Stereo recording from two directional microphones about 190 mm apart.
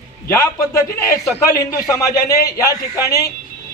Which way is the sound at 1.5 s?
15° left (ahead or behind).